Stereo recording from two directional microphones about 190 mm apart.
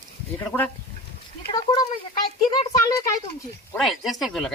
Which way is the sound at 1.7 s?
20° left (ahead or behind).